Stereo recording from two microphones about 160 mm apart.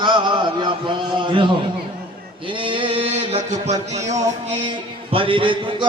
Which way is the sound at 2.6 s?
30° right (ahead or behind).